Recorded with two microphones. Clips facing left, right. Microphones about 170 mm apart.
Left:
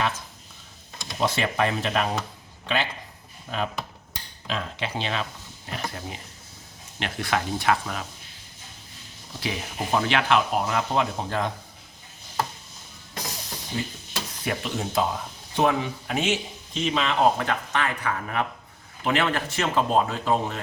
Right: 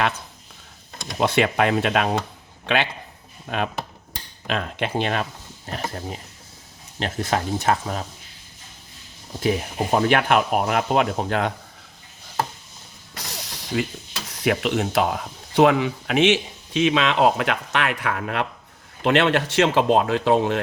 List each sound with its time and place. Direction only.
1.2 s speech: 65° right (ahead or behind)
3.5 s speech: 60° right (ahead or behind)
5.6 s speech: 40° right (ahead or behind)
9.4 s speech: 45° right (ahead or behind); by 11.5 s 70° right (ahead or behind)
13.3 s music: 75° right (ahead or behind)
14.4 s speech: 65° right (ahead or behind)